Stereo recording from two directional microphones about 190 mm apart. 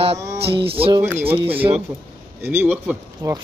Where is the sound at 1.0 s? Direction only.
10° right (ahead or behind).